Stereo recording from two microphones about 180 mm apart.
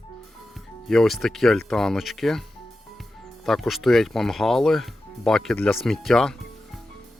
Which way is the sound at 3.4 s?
Centre (ahead or behind).